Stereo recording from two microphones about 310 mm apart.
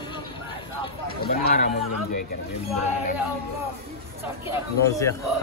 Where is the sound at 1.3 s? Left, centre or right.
Left.